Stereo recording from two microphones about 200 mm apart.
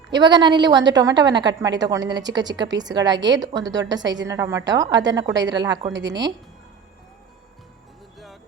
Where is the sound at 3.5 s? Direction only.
65° right (ahead or behind).